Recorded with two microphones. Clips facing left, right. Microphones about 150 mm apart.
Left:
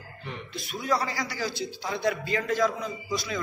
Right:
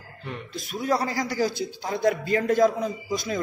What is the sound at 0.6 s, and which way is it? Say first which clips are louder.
A man's voice: right 3 dB; 45° right (ahead or behind).